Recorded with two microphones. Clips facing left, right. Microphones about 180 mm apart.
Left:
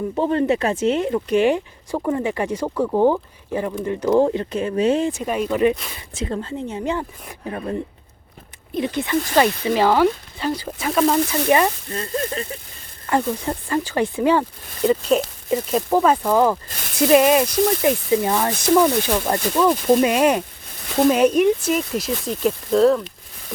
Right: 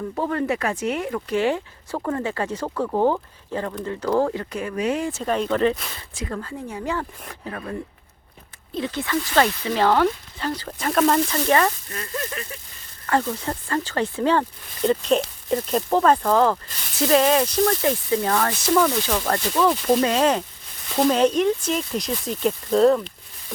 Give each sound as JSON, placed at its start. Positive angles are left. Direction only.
{"t": 0.2, "sound": "speech", "side_deg": 25}
{"t": 5.1, "sound": "speech", "side_deg": 10}
{"t": 6.1, "sound": "speech", "side_deg": 25}
{"t": 11.9, "sound": "speech", "side_deg": 30}
{"t": 13.1, "sound": "speech", "side_deg": 15}